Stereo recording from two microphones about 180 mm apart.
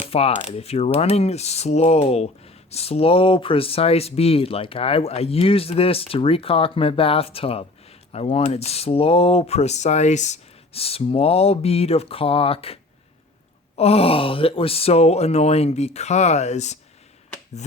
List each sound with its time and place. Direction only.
0.1 s coin: 35° left (ahead or behind)